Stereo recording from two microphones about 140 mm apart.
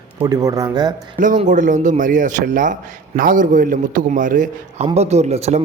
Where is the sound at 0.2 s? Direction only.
25° right (ahead or behind).